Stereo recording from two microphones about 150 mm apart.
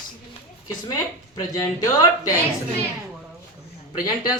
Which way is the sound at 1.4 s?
20° left (ahead or behind).